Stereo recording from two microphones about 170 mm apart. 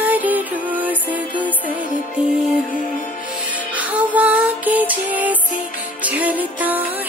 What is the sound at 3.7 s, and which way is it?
Music, 10° right (ahead or behind).